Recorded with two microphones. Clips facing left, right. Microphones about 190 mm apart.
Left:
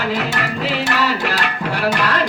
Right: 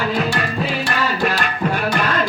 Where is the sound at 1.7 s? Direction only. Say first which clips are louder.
Left 4 dB; 80° left.